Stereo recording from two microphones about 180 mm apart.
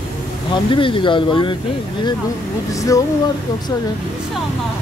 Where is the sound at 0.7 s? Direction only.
30° left (ahead or behind).